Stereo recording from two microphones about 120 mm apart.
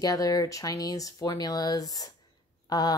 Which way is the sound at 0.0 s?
30° left (ahead or behind).